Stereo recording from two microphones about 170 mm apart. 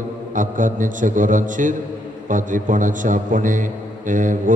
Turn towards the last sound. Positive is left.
turn(degrees=-50)  # may be behind; listen again after turning